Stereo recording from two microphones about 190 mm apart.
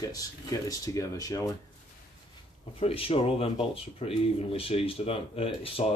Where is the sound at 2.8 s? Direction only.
30° left (ahead or behind).